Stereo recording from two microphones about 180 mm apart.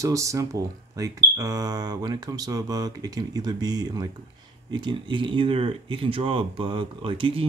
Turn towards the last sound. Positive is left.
turn(degrees=-30)  # may be behind; listen again after turning